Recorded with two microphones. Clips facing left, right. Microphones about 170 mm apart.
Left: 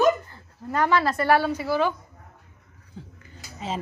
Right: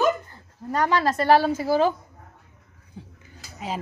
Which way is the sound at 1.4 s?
45° right (ahead or behind).